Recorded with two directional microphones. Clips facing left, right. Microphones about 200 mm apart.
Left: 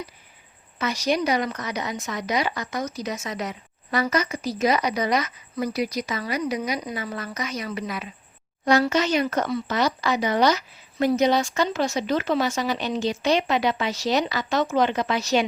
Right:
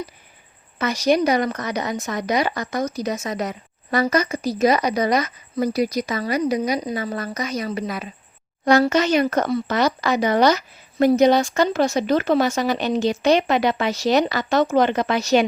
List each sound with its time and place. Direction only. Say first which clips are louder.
0.8 s a woman's voice: right 5 dB; 50° right (ahead or behind)